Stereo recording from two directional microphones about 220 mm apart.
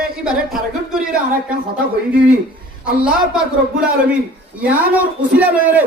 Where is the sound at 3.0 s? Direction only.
5° right (ahead or behind).